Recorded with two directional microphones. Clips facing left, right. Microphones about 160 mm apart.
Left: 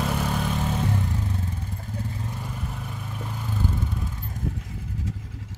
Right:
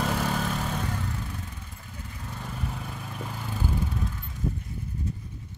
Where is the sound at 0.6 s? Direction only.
25° left (ahead or behind).